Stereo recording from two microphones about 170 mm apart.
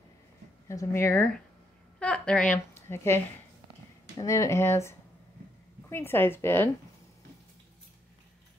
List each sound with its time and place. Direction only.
0.7 s a woman's voice: 15° left (ahead or behind)
2.7 s a sound: 15° left (ahead or behind)
4.2 s a woman's voice: 20° left (ahead or behind)